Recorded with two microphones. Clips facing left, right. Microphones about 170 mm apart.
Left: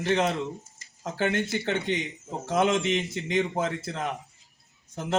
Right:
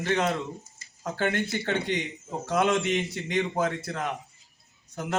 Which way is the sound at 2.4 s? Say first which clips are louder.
Left 1 dB; 20° left (ahead or behind).